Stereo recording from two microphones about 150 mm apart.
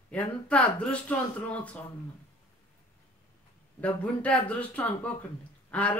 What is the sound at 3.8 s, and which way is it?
Speech, 10° left (ahead or behind).